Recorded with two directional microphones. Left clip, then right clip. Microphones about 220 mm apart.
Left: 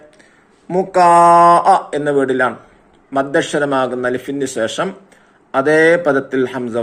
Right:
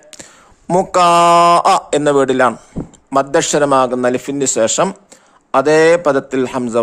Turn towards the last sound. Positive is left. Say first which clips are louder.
# right 1 dB
turn(degrees=-35)  # may be behind; listen again after turning